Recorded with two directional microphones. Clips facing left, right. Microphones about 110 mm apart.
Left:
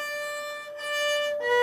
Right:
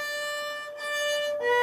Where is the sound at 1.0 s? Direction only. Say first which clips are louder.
Even; 15° right (ahead or behind).